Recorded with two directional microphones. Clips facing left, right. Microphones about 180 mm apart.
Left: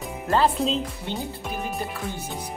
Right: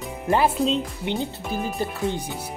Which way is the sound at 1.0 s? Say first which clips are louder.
Right 4 dB; 20° right (ahead or behind).